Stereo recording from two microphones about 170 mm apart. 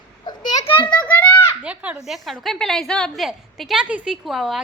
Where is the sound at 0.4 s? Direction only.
45° left (ahead or behind).